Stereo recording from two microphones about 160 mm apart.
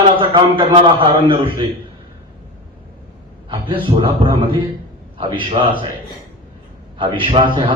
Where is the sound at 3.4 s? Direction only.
35° right (ahead or behind).